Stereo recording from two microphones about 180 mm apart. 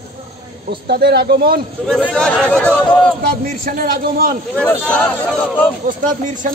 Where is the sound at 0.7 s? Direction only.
65° right (ahead or behind).